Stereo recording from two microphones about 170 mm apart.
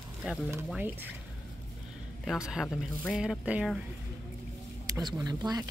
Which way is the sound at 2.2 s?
5° right (ahead or behind).